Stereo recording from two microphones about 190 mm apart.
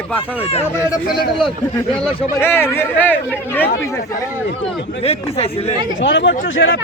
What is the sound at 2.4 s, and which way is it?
Speech, 10° left (ahead or behind).